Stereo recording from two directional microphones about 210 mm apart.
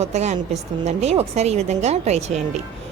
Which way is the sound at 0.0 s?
30° right (ahead or behind).